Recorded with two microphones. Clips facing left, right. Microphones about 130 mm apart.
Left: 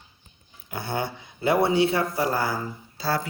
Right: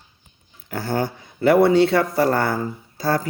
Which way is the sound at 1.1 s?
55° right (ahead or behind).